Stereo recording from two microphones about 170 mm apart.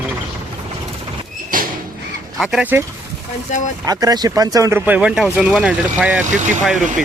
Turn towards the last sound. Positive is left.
turn(degrees=-45)  # may be behind; listen again after turning